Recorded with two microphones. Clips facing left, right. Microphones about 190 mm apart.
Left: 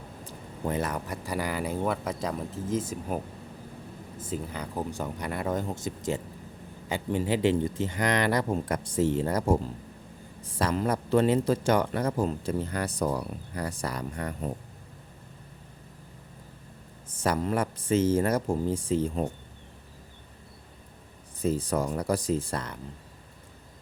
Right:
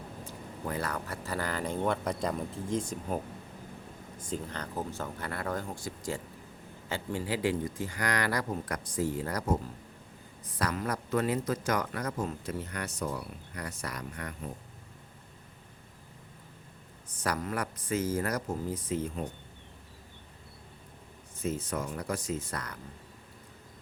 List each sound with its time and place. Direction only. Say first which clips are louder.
0.7 s speech: left 4 dB; 20° left (ahead or behind)
4.2 s speech: left 3 dB; 5° left (ahead or behind); by 9.6 s 25° left (ahead or behind)
10.6 s speech: left 5 dB; 25° left (ahead or behind)
17.2 s speech: left 6 dB; 25° left (ahead or behind)
21.4 s speech: left 6 dB; 35° left (ahead or behind)